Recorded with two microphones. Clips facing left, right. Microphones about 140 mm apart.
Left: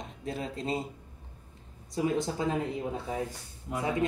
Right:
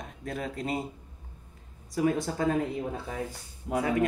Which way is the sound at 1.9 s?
20° left (ahead or behind).